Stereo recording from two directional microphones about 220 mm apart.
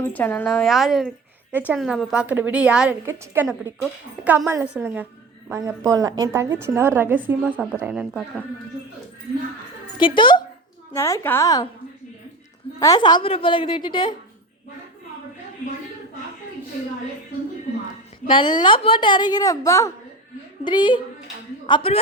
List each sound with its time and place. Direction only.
0.1 s a woman's voice: 10° left (ahead or behind)
10.0 s a woman's voice: 20° left (ahead or behind)
12.8 s a woman's voice: 20° left (ahead or behind)
18.3 s a woman's voice: 20° left (ahead or behind)